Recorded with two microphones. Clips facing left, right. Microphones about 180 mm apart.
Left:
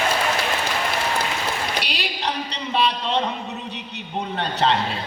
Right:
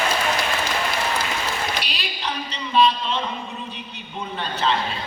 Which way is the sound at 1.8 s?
70° left (ahead or behind).